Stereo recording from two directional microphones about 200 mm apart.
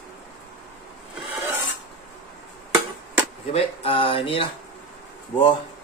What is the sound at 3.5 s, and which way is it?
Speech, 30° left (ahead or behind).